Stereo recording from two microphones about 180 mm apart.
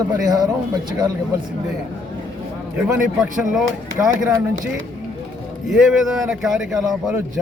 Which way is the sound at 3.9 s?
15° right (ahead or behind).